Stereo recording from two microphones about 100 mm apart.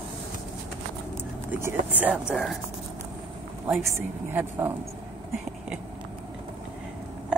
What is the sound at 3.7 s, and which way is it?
A woman's voice, 25° right (ahead or behind).